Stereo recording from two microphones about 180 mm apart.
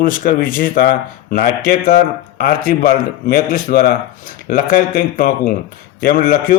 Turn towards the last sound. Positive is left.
turn(degrees=55)  # may be behind; listen again after turning